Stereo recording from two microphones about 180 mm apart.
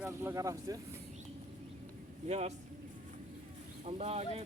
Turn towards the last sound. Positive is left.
turn(degrees=-35)  # may be behind; listen again after turning